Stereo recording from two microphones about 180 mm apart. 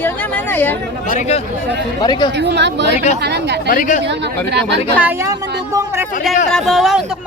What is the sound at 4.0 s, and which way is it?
Speech, 75° right (ahead or behind).